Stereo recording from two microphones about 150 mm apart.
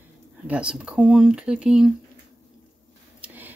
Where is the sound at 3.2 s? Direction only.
10° right (ahead or behind).